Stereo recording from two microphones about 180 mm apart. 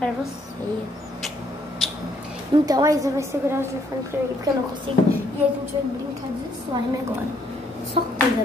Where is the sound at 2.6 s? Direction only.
20° right (ahead or behind).